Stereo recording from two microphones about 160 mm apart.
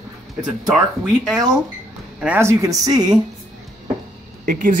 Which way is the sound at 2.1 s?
10° right (ahead or behind).